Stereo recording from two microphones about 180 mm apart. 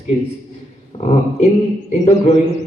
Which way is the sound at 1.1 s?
35° left (ahead or behind).